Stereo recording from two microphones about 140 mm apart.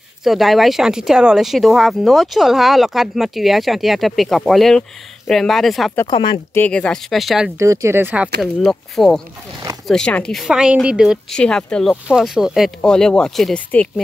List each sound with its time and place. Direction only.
0.2 s speech: centre (ahead or behind)
6.0 s speech: 35° left (ahead or behind)
6.5 s speech: 10° left (ahead or behind)
7.5 s speech: 20° right (ahead or behind)
8.4 s speech: centre (ahead or behind)
11.3 s speech: 5° left (ahead or behind)